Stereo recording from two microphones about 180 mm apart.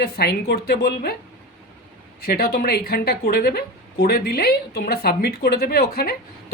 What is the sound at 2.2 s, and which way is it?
Speech, 60° left (ahead or behind).